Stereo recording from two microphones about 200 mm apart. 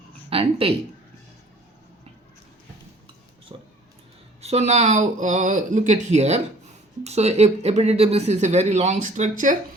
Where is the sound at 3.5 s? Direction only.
25° right (ahead or behind).